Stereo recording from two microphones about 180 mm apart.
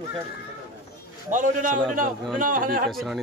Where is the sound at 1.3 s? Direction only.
45° right (ahead or behind).